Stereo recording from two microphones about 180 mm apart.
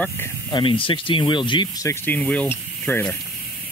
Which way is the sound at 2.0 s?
10° left (ahead or behind).